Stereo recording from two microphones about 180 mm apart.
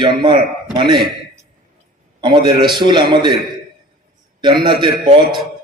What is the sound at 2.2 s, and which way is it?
A man's voice, 25° right (ahead or behind).